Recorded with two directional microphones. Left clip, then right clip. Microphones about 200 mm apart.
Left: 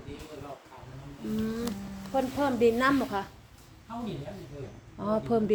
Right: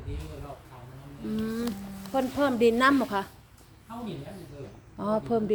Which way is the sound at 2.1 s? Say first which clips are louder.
Right 2 dB; 50° right (ahead or behind).